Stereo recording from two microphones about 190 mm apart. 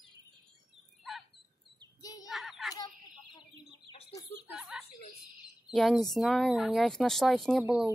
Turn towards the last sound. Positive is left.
turn(degrees=-5)  # may be behind; listen again after turning